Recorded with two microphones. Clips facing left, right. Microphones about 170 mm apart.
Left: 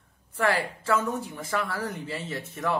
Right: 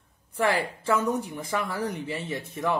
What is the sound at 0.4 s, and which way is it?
A woman's voice, 20° right (ahead or behind).